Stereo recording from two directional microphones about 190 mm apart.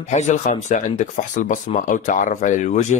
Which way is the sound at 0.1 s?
40° left (ahead or behind).